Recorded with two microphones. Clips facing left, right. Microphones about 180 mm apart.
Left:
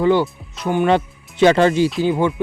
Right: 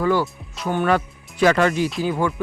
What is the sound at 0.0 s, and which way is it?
Speech, 25° left (ahead or behind).